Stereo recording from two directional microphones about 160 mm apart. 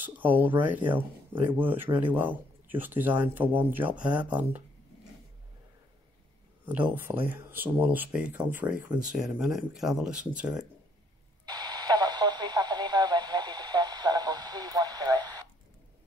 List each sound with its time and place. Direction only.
0.0 s speech: 10° right (ahead or behind)
6.9 s speech: 10° right (ahead or behind)
11.4 s radio: 25° right (ahead or behind)